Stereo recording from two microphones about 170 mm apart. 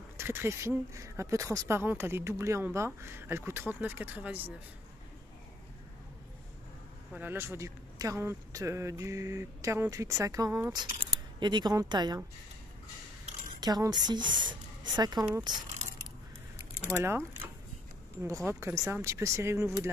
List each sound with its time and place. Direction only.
0.2 s speech: 15° right (ahead or behind)
7.2 s a woman's voice: 15° right (ahead or behind)
13.6 s speech: 25° right (ahead or behind)
16.9 s speech: 15° right (ahead or behind)
18.2 s speech: 15° right (ahead or behind)